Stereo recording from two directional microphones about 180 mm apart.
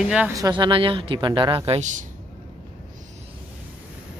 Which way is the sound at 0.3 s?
20° right (ahead or behind).